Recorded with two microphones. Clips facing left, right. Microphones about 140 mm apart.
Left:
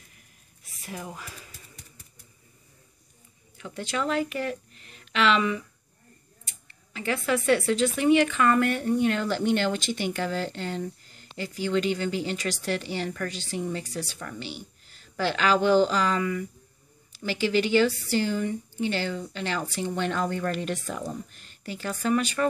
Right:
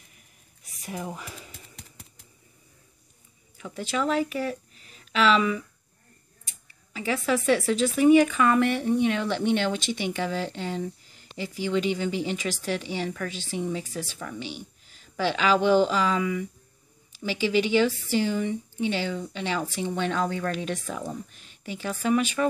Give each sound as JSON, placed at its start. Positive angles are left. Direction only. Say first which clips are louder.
{"t": 1.0, "sound": "speech", "louder": "right 3 dB", "side_deg": -25}
{"t": 3.5, "sound": "speech", "louder": "right 2 dB", "side_deg": -5}
{"t": 6.7, "sound": "speech", "louder": "right 1 dB", "side_deg": -5}